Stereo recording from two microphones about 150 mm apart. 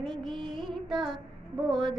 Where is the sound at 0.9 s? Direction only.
Centre (ahead or behind).